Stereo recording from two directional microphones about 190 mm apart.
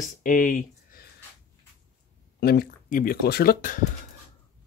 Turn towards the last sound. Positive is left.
turn(degrees=45)  # may be behind; listen again after turning